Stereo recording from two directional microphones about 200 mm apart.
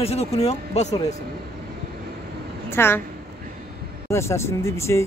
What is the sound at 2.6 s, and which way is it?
Speech, 10° left (ahead or behind).